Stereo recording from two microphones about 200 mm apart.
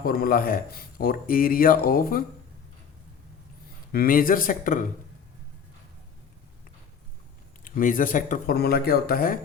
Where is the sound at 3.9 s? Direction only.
45° left (ahead or behind).